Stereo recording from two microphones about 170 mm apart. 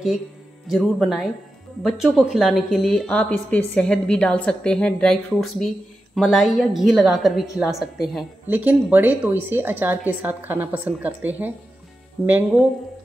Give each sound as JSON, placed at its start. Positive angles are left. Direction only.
{"t": 0.7, "sound": "a woman's voice", "side_deg": 0}